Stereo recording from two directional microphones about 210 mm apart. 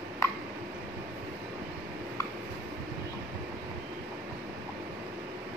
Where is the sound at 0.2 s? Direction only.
15° left (ahead or behind).